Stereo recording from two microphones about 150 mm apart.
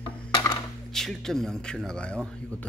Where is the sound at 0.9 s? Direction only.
5° left (ahead or behind).